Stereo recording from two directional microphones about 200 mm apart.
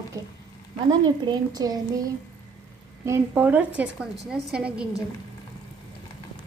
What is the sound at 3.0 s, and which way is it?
A woman's voice, 10° right (ahead or behind).